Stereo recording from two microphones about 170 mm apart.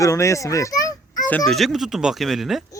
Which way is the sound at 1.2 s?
5° left (ahead or behind).